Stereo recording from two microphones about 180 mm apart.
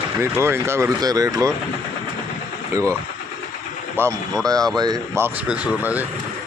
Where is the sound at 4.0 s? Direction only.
10° right (ahead or behind).